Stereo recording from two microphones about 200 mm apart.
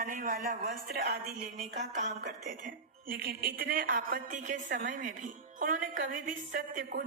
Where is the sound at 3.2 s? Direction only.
45° right (ahead or behind).